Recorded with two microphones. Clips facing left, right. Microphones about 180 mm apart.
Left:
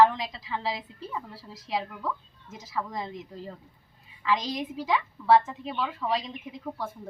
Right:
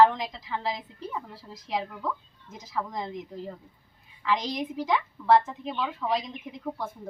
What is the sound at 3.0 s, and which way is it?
A woman's voice, 15° right (ahead or behind).